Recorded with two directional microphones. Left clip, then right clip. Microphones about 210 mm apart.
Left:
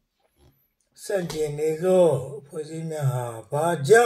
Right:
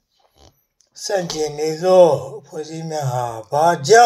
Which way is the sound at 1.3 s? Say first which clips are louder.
Right 4 dB; 45° right (ahead or behind).